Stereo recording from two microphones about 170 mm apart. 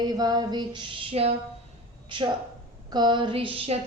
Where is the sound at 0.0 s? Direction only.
25° right (ahead or behind).